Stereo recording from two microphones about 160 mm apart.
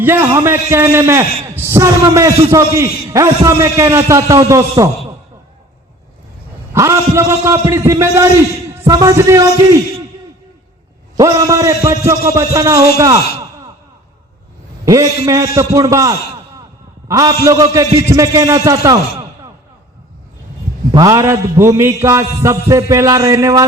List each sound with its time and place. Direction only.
0.0 s a man's voice: 15° right (ahead or behind)
6.7 s a man's voice: 20° right (ahead or behind)
11.2 s a man's voice: 20° right (ahead or behind)
14.8 s a man's voice: 20° right (ahead or behind)
20.9 s a man's voice: 20° right (ahead or behind)